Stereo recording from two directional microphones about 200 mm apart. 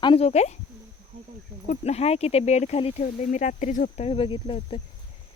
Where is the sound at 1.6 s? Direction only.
35° left (ahead or behind).